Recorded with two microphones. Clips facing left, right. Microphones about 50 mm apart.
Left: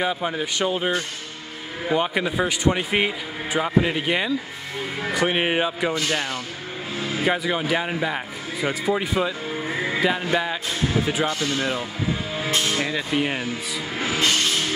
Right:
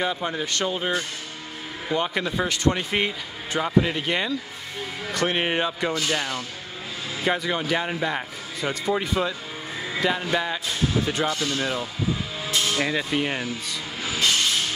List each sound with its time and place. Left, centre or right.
0.0 s a man's voice: centre
9.7 s music: left
9.9 s a man's voice: centre
12.7 s a man's voice: centre
13.9 s music: left